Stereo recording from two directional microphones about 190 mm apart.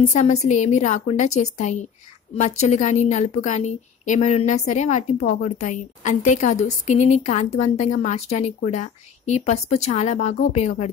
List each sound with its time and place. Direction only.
0.1 s a woman's voice: 35° left (ahead or behind)